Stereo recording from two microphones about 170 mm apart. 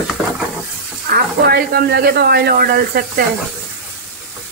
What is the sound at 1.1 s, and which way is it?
Speech, 65° right (ahead or behind).